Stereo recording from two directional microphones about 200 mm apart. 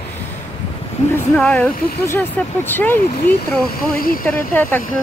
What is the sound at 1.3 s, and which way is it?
Speech, 5° left (ahead or behind).